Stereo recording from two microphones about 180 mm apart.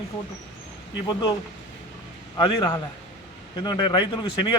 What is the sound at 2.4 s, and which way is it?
A man's voice, 25° left (ahead or behind).